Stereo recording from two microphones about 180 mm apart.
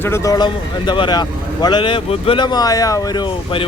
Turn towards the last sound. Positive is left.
turn(degrees=25)  # may be behind; listen again after turning